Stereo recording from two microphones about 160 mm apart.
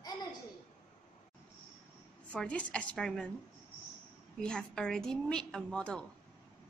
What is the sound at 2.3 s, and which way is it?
Speech, 5° left (ahead or behind).